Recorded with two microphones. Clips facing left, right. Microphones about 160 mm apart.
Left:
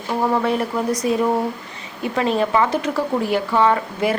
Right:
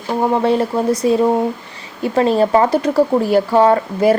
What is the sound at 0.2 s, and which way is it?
A woman's voice, 30° right (ahead or behind).